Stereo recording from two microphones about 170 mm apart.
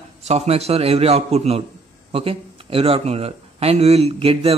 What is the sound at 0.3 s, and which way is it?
Speech, 40° right (ahead or behind).